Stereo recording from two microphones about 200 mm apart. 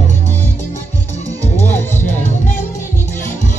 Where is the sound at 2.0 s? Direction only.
40° left (ahead or behind).